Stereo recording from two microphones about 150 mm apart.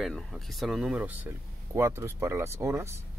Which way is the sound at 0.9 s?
10° right (ahead or behind).